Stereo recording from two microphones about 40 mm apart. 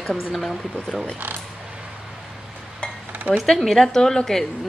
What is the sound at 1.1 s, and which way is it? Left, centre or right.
Speech, right.